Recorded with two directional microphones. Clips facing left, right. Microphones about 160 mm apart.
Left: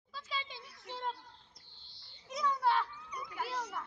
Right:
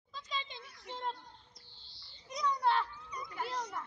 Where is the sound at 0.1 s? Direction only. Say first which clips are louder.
Even; 5° left (ahead or behind).